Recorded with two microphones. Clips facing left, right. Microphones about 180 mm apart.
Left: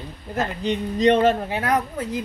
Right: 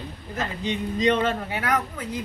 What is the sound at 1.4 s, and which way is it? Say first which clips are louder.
Speech: left 3 dB; 35° left (ahead or behind).